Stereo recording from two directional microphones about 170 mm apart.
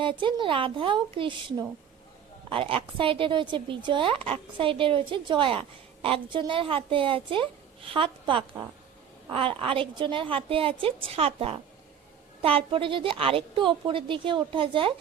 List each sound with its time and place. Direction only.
0.0 s a woman's voice: 30° right (ahead or behind)